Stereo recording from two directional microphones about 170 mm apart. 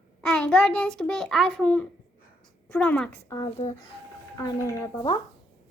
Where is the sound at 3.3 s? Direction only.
20° left (ahead or behind).